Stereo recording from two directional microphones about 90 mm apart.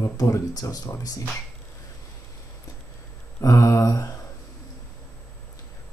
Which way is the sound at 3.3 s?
35° left (ahead or behind).